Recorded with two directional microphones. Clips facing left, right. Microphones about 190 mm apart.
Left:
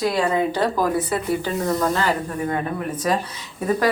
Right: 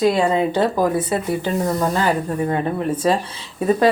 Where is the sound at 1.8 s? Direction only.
20° right (ahead or behind).